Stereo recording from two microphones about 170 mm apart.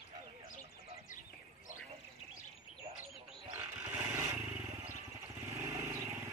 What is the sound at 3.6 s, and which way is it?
Dog, 15° right (ahead or behind).